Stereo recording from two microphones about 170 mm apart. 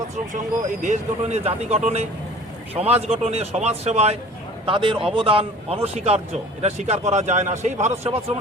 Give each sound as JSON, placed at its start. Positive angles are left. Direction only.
{"t": 0.8, "sound": "a man's voice", "side_deg": -45}